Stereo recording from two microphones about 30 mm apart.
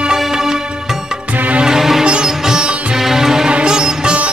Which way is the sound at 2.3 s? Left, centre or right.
Centre.